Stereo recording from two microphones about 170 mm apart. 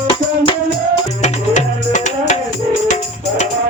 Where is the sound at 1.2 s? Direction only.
45° left (ahead or behind).